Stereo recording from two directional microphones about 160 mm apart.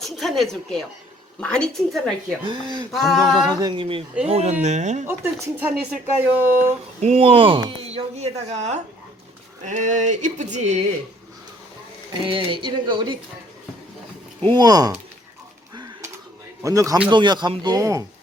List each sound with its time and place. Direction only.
0.0 s a woman's voice: centre (ahead or behind)
2.4 s speech: 30° right (ahead or behind)
2.9 s a woman's voice: centre (ahead or behind)
3.5 s speech: 25° right (ahead or behind); by 5.0 s 50° right (ahead or behind)
5.0 s speech: 10° right (ahead or behind)
7.0 s speech: 40° right (ahead or behind)
12.2 s speech: 30° right (ahead or behind)
14.4 s speech: 25° right (ahead or behind)
15.7 s a sound: 25° right (ahead or behind)
16.6 s speech: 20° right (ahead or behind)